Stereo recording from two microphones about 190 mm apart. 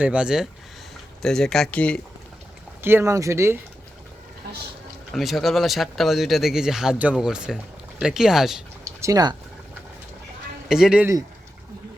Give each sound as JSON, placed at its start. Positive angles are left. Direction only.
{"t": 0.0, "sound": "speech", "side_deg": -5}
{"t": 2.8, "sound": "speech", "side_deg": -15}
{"t": 5.1, "sound": "speech", "side_deg": 0}
{"t": 9.0, "sound": "speech", "side_deg": -20}
{"t": 10.7, "sound": "speech", "side_deg": -5}